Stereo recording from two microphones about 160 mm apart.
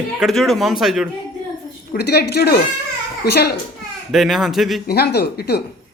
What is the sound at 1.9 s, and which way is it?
Speech, 90° left.